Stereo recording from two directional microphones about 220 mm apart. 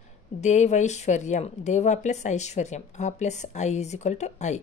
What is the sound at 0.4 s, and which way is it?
Speech, 30° left (ahead or behind).